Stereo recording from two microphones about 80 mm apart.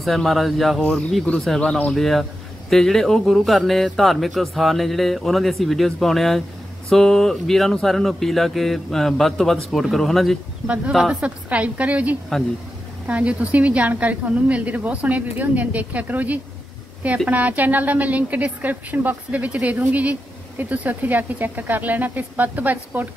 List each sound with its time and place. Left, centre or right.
0.0 s speech: centre
10.9 s a woman's voice: centre